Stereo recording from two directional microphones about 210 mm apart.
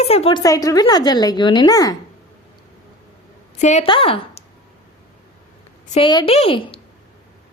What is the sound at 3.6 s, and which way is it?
Speech, 35° left (ahead or behind).